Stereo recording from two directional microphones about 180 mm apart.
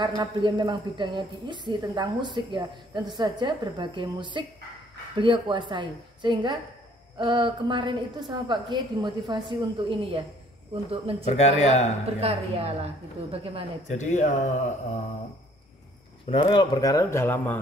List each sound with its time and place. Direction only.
0.0 s a woman's voice: 25° right (ahead or behind)
11.2 s speech: 35° left (ahead or behind)
12.2 s a woman's voice: 35° right (ahead or behind)
13.8 s speech: 40° left (ahead or behind)
16.3 s speech: 30° left (ahead or behind)